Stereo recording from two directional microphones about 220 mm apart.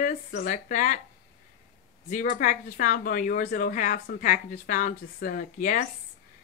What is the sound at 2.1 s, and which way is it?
Speech, 35° left (ahead or behind).